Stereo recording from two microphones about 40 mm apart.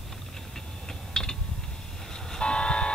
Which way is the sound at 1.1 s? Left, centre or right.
Centre.